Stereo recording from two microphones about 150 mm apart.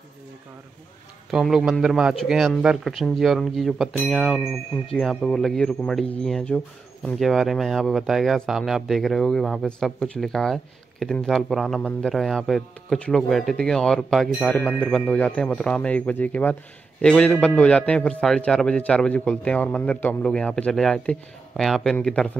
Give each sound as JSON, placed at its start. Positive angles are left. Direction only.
{"t": 1.3, "sound": "a man's voice", "side_deg": 0}